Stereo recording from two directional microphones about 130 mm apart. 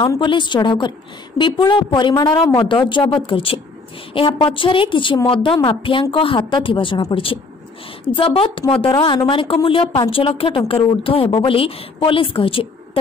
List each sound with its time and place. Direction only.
0.2 s a woman's voice: 35° left (ahead or behind)